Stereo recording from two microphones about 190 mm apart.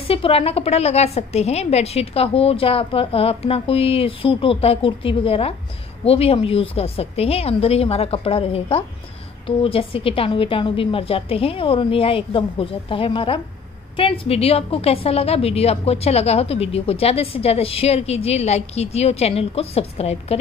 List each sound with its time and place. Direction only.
0.0 s a woman's voice: 30° left (ahead or behind)